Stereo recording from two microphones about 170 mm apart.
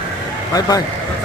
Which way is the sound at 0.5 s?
20° left (ahead or behind).